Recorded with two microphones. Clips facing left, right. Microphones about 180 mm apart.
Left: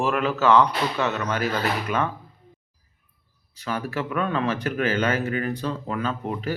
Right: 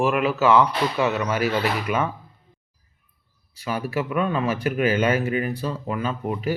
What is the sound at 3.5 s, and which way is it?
Speech, 10° right (ahead or behind).